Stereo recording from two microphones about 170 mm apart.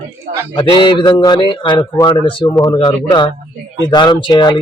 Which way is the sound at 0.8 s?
30° left (ahead or behind).